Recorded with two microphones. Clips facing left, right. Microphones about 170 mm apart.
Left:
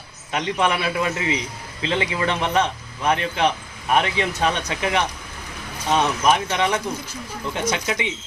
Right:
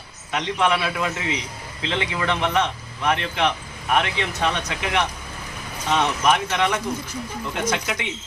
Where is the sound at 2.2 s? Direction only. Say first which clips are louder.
Even; 35° left (ahead or behind).